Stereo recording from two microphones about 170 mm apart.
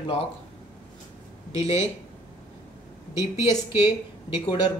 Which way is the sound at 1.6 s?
40° left (ahead or behind).